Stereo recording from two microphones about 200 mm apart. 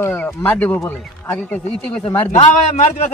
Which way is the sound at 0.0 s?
10° left (ahead or behind).